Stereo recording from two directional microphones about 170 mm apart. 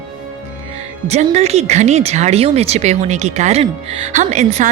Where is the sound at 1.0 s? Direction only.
40° right (ahead or behind).